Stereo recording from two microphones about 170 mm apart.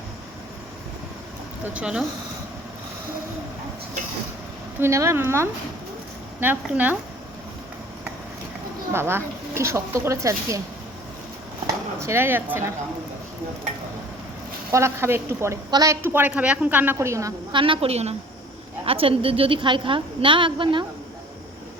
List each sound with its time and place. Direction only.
1.6 s a woman's voice: 5° right (ahead or behind)
4.8 s a woman's voice: 15° right (ahead or behind)
8.9 s a woman's voice: 15° right (ahead or behind)
11.6 s speech: 15° right (ahead or behind)
14.7 s a woman's voice: 15° right (ahead or behind)
17.6 s a woman's voice: 35° right (ahead or behind)